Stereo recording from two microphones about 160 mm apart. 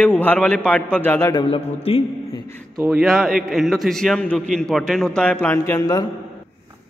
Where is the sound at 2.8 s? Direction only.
Centre (ahead or behind); by 6.1 s 25° left (ahead or behind).